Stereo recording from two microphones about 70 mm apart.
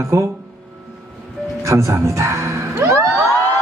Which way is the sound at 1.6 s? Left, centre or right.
Right.